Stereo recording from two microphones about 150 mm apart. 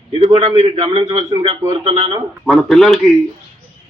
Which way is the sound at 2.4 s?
Centre (ahead or behind).